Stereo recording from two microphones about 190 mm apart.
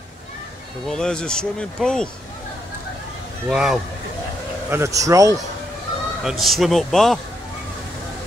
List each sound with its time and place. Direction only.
0.8 s speech: 5° left (ahead or behind)
3.4 s speech: centre (ahead or behind)
4.6 s speech: 15° right (ahead or behind)
6.2 s speech: centre (ahead or behind)